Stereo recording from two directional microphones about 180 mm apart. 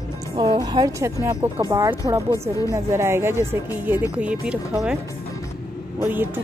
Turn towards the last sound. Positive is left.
turn(degrees=-10)  # may be behind; listen again after turning